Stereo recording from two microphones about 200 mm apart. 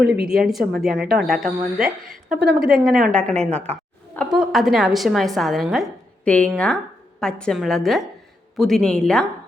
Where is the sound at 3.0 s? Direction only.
40° right (ahead or behind).